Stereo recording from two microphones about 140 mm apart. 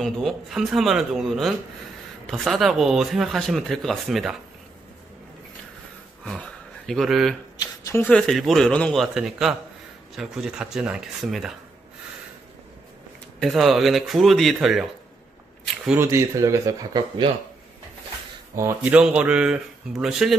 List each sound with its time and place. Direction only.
0.0 s speech: centre (ahead or behind)
6.2 s speech: 5° left (ahead or behind)
13.4 s speech: centre (ahead or behind)
16.0 s speech: 20° right (ahead or behind)
18.5 s speech: 20° right (ahead or behind)
18.9 s speech: 10° right (ahead or behind)